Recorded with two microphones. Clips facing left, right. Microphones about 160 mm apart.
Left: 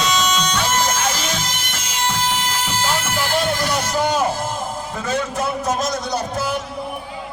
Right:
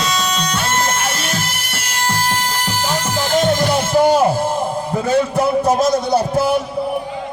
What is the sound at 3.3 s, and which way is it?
Music, 45° right (ahead or behind).